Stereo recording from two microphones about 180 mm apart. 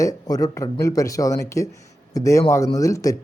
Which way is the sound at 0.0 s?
20° left (ahead or behind).